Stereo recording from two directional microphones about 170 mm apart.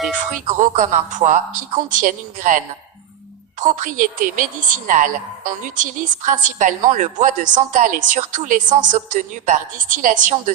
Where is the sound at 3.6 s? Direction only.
50° right (ahead or behind).